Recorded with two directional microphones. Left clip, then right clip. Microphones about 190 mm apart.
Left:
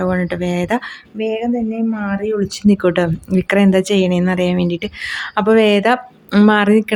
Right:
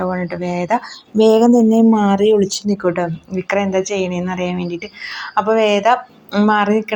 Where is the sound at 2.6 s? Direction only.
35° left (ahead or behind).